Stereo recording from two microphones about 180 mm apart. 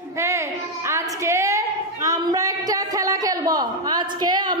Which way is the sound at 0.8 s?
15° right (ahead or behind).